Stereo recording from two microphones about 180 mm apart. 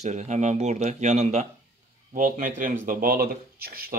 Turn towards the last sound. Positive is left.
turn(degrees=-55)  # may be behind; listen again after turning